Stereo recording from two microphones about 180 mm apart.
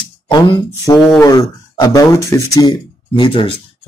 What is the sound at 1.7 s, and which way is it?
Speech, 20° left (ahead or behind).